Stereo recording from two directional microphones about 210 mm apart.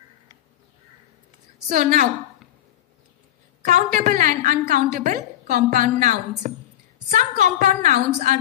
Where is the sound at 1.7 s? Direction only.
40° right (ahead or behind).